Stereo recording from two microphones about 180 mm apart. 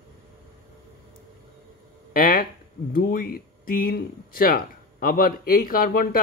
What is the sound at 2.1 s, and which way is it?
Speech, 50° left (ahead or behind).